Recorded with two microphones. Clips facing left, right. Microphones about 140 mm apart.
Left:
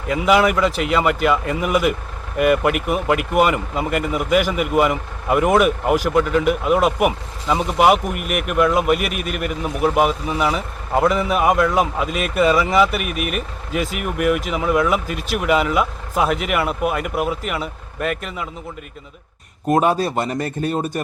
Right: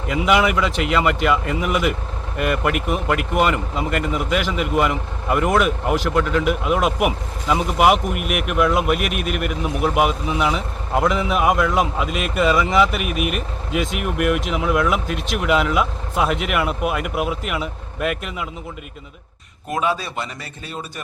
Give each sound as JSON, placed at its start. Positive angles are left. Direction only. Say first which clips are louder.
{"t": 0.1, "sound": "speech", "louder": "left 2 dB", "side_deg": 0}
{"t": 19.6, "sound": "speech", "louder": "left 6 dB", "side_deg": 45}